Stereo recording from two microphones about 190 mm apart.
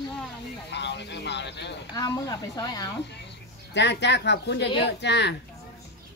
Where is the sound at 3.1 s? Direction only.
65° left (ahead or behind).